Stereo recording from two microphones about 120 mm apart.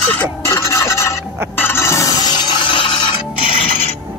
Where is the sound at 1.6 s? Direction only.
20° left (ahead or behind); by 2.9 s 45° left (ahead or behind).